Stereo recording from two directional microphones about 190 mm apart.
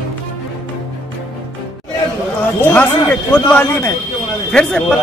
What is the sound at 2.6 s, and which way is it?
A man's voice, 10° left (ahead or behind).